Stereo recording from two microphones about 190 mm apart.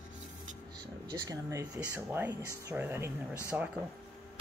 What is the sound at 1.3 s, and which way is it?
Speech, 15° right (ahead or behind).